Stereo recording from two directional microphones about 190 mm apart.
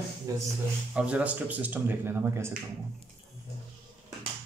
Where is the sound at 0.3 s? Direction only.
20° right (ahead or behind).